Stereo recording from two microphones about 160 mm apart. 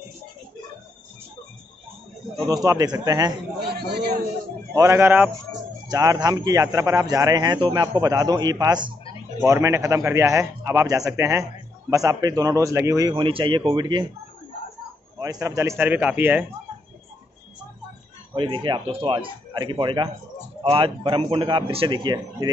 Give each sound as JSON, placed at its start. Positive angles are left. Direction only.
{"t": 2.4, "sound": "a man's voice", "side_deg": -20}
{"t": 3.7, "sound": "a man's voice", "side_deg": -85}
{"t": 4.7, "sound": "a man's voice", "side_deg": -15}
{"t": 13.1, "sound": "a man's voice", "side_deg": -35}
{"t": 15.1, "sound": "a man's voice", "side_deg": -20}
{"t": 18.3, "sound": "a man's voice", "side_deg": -30}